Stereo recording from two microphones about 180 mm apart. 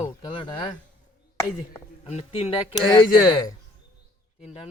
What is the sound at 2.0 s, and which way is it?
Speech, 35° left (ahead or behind).